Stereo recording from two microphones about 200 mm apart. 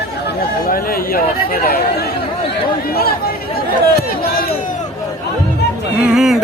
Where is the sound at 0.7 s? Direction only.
45° left (ahead or behind).